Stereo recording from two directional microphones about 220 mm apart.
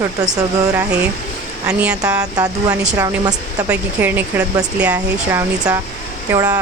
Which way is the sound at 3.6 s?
10° right (ahead or behind).